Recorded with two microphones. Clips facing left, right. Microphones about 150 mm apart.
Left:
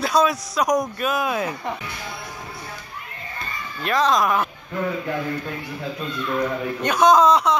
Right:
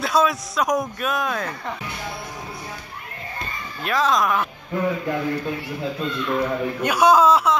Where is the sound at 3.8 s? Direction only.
Centre (ahead or behind).